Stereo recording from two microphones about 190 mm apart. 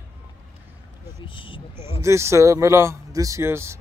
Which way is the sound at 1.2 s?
25° left (ahead or behind).